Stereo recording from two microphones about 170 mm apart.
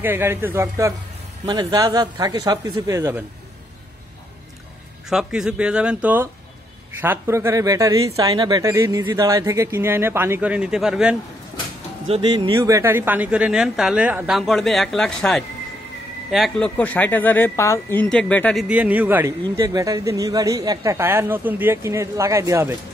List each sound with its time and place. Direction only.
0.0 s a man's voice: 15° right (ahead or behind)
5.1 s a man's voice: 5° right (ahead or behind)
12.1 s speech: 25° right (ahead or behind)
12.5 s speech: 15° right (ahead or behind); by 18.6 s 5° left (ahead or behind)
18.6 s a man's voice: 10° right (ahead or behind)